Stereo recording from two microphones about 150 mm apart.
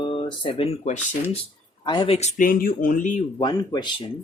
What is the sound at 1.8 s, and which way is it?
Speech, 30° left (ahead or behind).